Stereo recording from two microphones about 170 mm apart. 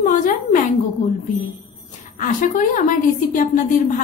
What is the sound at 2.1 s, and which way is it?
A woman's voice, 50° left (ahead or behind).